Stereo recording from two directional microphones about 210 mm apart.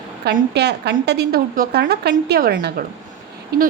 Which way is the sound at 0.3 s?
50° right (ahead or behind).